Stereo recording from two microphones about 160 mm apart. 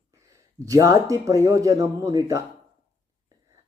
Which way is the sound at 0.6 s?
20° right (ahead or behind).